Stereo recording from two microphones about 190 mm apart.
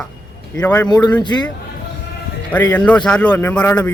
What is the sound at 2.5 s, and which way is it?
Speech, 10° left (ahead or behind).